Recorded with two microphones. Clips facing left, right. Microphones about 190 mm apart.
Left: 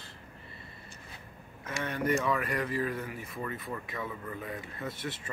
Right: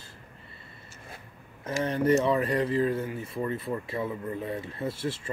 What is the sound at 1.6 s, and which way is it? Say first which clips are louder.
Speech: right 6 dB; 30° right (ahead or behind).